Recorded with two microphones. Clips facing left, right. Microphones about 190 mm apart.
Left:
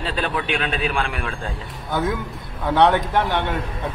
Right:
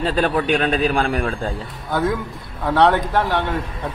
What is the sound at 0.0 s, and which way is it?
Speech, 45° right (ahead or behind).